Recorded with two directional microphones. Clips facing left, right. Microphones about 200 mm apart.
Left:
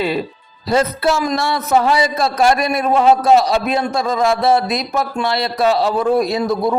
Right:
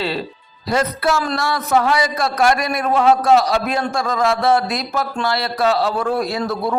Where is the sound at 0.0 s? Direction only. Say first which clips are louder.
Left 4 dB; 15° left (ahead or behind).